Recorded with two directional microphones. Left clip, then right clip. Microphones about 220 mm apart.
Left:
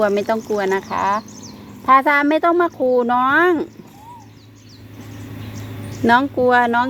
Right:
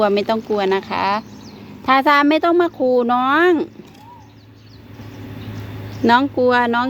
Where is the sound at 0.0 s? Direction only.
20° right (ahead or behind).